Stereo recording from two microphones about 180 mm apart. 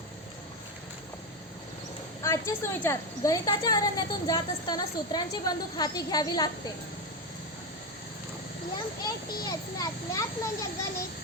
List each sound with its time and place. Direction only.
2.2 s a woman's voice: 15° left (ahead or behind)
9.0 s a woman's voice: 20° left (ahead or behind)